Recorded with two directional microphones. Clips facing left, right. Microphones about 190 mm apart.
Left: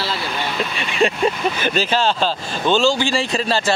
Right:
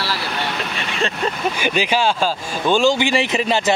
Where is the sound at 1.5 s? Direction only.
10° right (ahead or behind).